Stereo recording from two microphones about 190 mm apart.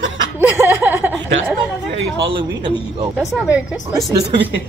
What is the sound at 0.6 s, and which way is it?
Speech, 10° right (ahead or behind).